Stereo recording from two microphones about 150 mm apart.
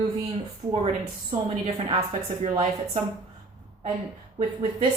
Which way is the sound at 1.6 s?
45° right (ahead or behind).